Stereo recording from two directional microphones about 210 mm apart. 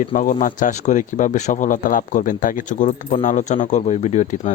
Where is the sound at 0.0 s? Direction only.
40° left (ahead or behind).